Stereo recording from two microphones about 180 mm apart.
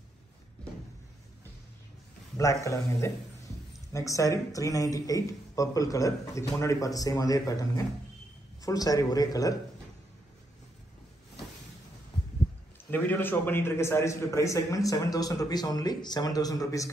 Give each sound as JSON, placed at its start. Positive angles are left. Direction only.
{"t": 2.3, "sound": "a man's voice", "side_deg": 15}
{"t": 12.9, "sound": "a man's voice", "side_deg": 10}